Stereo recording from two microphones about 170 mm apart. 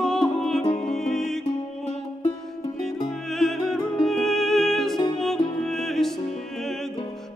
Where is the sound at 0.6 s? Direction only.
45° left (ahead or behind).